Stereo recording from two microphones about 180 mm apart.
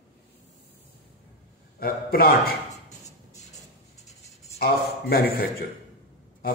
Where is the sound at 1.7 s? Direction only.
55° left (ahead or behind).